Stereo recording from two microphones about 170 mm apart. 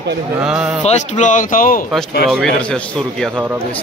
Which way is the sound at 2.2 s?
Centre (ahead or behind).